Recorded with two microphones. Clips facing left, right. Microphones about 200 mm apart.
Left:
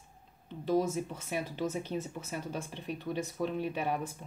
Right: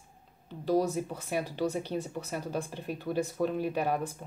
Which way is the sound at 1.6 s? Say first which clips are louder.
Right 3 dB; 35° right (ahead or behind).